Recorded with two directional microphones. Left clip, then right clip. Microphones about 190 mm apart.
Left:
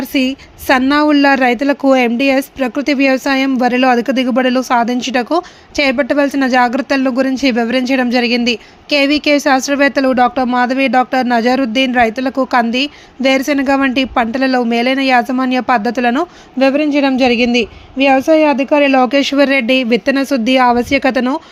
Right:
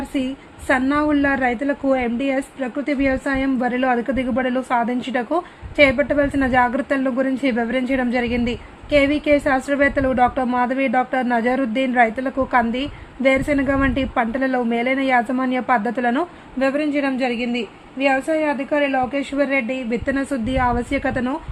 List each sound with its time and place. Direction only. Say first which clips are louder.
0.1 s a woman's voice: left 9 dB; 20° left (ahead or behind)